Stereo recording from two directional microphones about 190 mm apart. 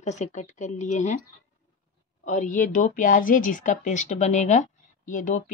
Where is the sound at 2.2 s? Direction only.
40° left (ahead or behind).